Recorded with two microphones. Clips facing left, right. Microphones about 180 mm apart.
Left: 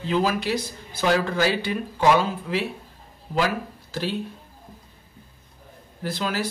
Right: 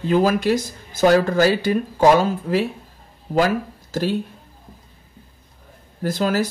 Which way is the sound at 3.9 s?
45° right (ahead or behind).